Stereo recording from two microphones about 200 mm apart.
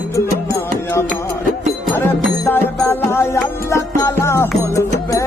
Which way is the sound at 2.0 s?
10° left (ahead or behind).